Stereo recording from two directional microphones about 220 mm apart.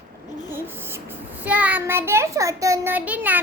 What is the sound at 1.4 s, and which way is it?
Child singing, 5° right (ahead or behind).